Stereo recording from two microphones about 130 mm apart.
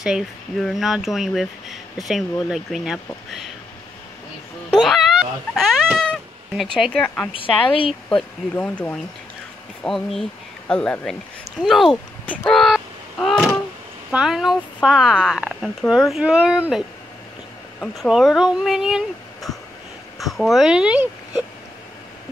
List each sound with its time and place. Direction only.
0.0 s speech: centre (ahead or behind)
4.6 s speech: centre (ahead or behind)
5.9 s cat: centre (ahead or behind)
7.3 s speech: 45° left (ahead or behind)
8.2 s speech: 10° left (ahead or behind)
12.3 s a sound: 5° left (ahead or behind)
14.1 s speech: 5° right (ahead or behind)